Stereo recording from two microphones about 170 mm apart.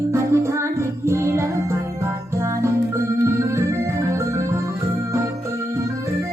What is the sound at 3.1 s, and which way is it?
Music, 15° right (ahead or behind).